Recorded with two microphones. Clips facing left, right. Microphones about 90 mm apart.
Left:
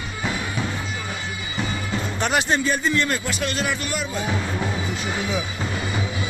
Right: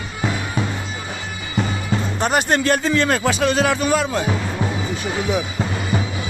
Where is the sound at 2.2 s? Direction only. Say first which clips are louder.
Right 3 dB; 40° right (ahead or behind).